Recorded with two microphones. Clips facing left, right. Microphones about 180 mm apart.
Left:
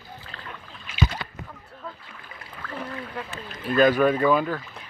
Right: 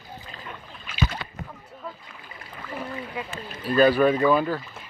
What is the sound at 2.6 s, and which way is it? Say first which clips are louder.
Speech: right 1 dB; 10° right (ahead or behind).